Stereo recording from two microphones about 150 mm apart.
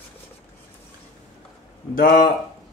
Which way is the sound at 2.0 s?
70° left (ahead or behind).